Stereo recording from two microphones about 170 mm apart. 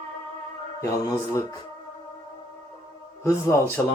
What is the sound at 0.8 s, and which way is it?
Speech, 15° left (ahead or behind).